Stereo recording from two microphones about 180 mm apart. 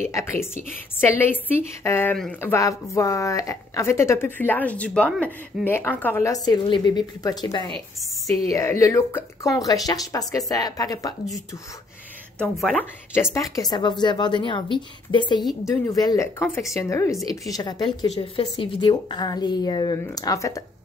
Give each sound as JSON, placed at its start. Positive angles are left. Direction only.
{"t": 0.0, "sound": "a woman's voice", "side_deg": 15}
{"t": 12.4, "sound": "speech", "side_deg": 5}
{"t": 13.1, "sound": "a woman's voice", "side_deg": 15}
{"t": 18.1, "sound": "a woman's voice", "side_deg": 35}